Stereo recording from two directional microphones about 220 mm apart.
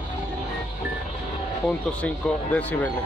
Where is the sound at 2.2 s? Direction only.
5° left (ahead or behind).